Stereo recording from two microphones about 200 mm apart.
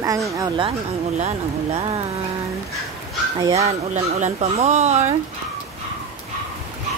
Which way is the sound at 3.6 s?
30° right (ahead or behind).